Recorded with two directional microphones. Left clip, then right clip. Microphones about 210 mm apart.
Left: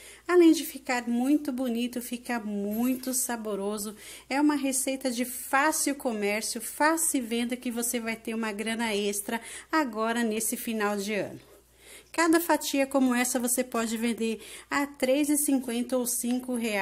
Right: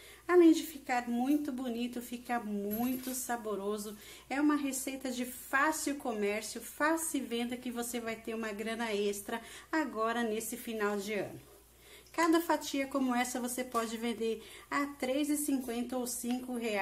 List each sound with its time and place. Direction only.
0.3 s a woman's voice: 40° left (ahead or behind)